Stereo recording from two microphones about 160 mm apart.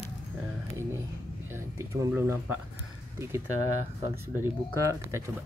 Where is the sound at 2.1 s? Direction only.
15° right (ahead or behind).